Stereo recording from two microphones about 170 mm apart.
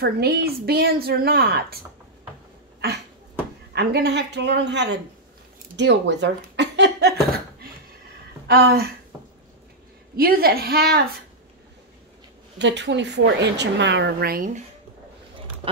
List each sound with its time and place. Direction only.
0.0 s a woman's voice: 70° right (ahead or behind)
3.7 s a woman's voice: 75° right (ahead or behind)
8.5 s a woman's voice: 70° right (ahead or behind)
10.1 s a woman's voice: 65° right (ahead or behind)
12.5 s speech: 90° right; by 14.6 s 55° right (ahead or behind)